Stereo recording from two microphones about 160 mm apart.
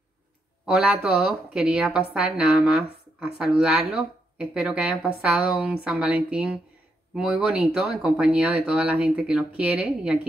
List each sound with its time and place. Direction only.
0.7 s a woman's voice: 5° right (ahead or behind)